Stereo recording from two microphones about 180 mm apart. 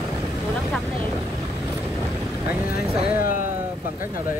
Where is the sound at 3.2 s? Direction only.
50° left (ahead or behind).